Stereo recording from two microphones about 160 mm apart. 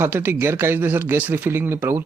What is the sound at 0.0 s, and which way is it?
Speech, 15° right (ahead or behind).